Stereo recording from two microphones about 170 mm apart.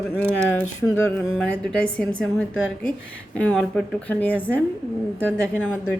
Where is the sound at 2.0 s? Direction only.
5° left (ahead or behind).